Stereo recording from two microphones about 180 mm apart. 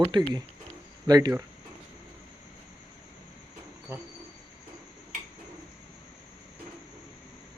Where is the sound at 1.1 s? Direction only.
20° right (ahead or behind).